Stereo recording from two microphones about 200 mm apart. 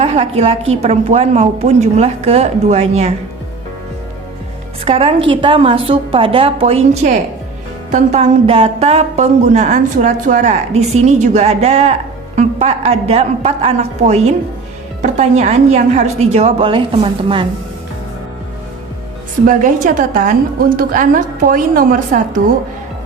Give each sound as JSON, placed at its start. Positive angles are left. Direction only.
{"t": 0.0, "sound": "speech", "side_deg": -30}
{"t": 4.9, "sound": "a woman's voice", "side_deg": -30}
{"t": 19.5, "sound": "a woman's voice", "side_deg": -40}